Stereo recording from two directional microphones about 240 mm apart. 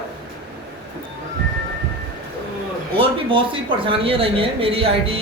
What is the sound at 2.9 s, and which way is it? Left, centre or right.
Speech, right.